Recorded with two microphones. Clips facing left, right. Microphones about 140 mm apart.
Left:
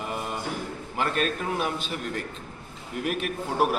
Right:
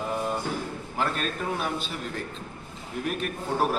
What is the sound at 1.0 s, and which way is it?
Speech, 5° left (ahead or behind).